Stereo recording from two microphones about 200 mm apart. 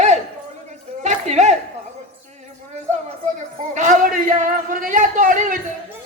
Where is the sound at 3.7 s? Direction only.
40° right (ahead or behind).